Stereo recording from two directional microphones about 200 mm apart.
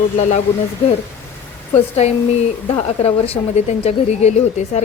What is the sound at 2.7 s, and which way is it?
A woman's voice, 30° left (ahead or behind).